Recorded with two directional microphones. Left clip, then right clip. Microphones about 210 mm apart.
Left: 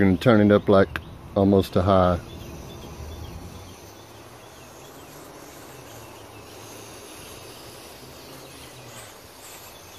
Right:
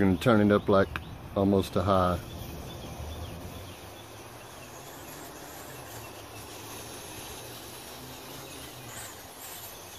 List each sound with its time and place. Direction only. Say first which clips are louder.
0.0 s speech: left 5 dB; 25° left (ahead or behind)